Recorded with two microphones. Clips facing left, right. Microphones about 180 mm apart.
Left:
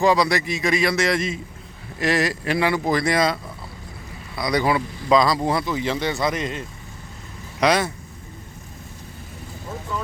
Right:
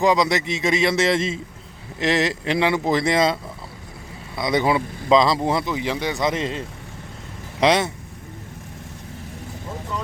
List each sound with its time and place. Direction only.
0.0 s a man's voice: 20° right (ahead or behind)
4.4 s a man's voice: 25° right (ahead or behind)
6.3 s a man's voice: 30° right (ahead or behind)